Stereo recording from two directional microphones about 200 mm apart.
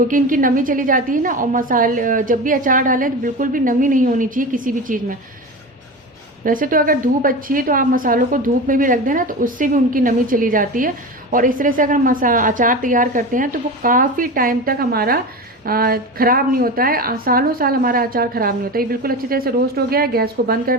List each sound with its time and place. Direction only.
0.1 s a woman's voice: 40° right (ahead or behind)
6.4 s a woman's voice: 45° right (ahead or behind)